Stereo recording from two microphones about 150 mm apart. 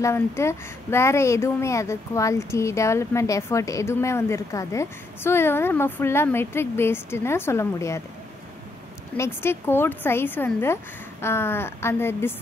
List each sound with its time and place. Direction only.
0.0 s speech: 20° left (ahead or behind)
9.1 s speech: 15° left (ahead or behind)